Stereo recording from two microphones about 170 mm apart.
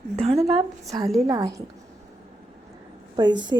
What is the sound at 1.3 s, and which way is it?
Speech, 20° right (ahead or behind).